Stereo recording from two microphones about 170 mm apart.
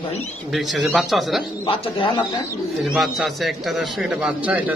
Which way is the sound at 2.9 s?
Centre (ahead or behind).